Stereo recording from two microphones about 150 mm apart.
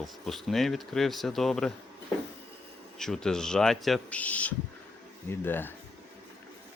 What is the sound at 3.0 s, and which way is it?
Speech, 5° left (ahead or behind).